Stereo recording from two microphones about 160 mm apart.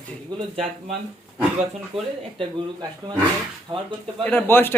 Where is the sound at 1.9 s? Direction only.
35° right (ahead or behind).